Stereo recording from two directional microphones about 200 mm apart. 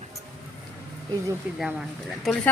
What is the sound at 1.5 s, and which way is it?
Speech, centre (ahead or behind).